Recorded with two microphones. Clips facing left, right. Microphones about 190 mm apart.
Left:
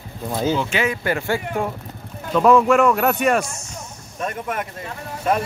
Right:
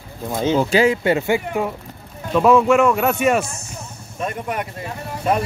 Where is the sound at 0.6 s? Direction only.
35° right (ahead or behind); by 1.4 s 20° right (ahead or behind).